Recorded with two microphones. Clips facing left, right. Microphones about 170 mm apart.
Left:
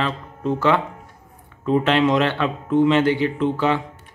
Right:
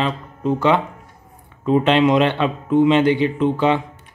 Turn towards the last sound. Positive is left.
turn(degrees=-20)  # may be behind; listen again after turning